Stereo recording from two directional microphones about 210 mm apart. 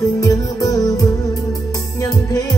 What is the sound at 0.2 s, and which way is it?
Music, 15° left (ahead or behind).